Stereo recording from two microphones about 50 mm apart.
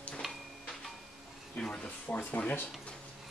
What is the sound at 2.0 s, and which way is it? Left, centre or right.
Speech, left.